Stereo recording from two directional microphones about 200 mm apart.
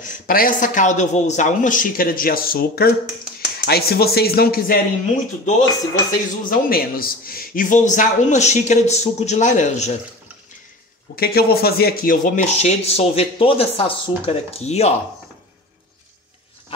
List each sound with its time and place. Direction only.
0.0 s speech: 45° left (ahead or behind)
6.5 s speech: 45° left (ahead or behind)
11.1 s speech: 50° left (ahead or behind); by 15.0 s 30° left (ahead or behind)